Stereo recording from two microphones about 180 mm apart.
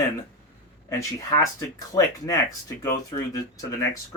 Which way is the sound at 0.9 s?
15° left (ahead or behind).